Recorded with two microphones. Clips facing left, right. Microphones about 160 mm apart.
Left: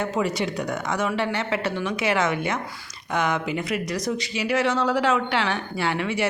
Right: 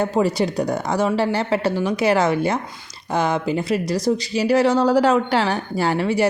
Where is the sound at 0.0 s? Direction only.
35° right (ahead or behind).